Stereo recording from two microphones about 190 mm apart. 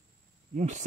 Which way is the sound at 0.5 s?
40° right (ahead or behind).